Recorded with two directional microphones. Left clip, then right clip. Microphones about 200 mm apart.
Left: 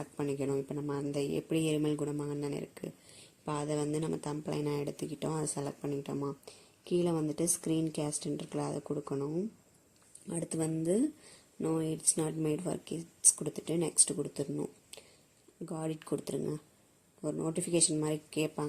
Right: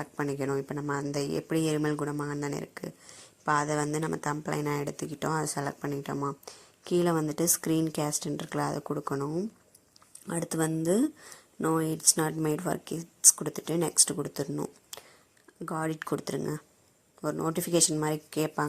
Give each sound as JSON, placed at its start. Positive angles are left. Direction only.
{"t": 0.0, "sound": "speech", "side_deg": 0}
{"t": 8.8, "sound": "speech", "side_deg": -20}
{"t": 9.0, "sound": "speech", "side_deg": -5}
{"t": 17.2, "sound": "a man's voice", "side_deg": -15}
{"t": 17.4, "sound": "speech", "side_deg": -5}